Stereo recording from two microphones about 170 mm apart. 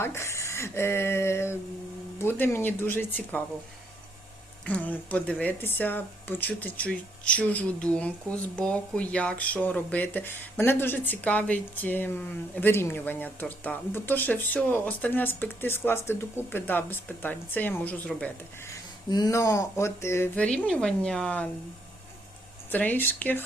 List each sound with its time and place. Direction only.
0.0 s speech: 15° left (ahead or behind)
4.6 s speech: 10° left (ahead or behind)
19.1 s speech: 20° left (ahead or behind)
22.7 s speech: 10° left (ahead or behind)